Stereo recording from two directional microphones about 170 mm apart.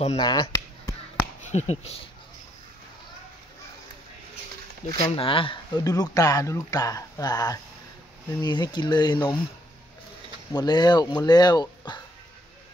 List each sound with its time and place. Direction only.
0.2 s speech: 25° left (ahead or behind)
1.5 s speech: 40° left (ahead or behind)
5.0 s speech: 30° left (ahead or behind)
10.5 s speech: 25° left (ahead or behind)